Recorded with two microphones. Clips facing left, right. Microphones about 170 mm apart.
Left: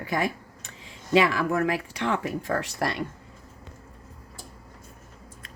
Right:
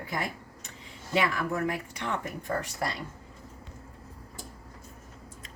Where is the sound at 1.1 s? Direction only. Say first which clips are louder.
Left 6 dB; 90° left.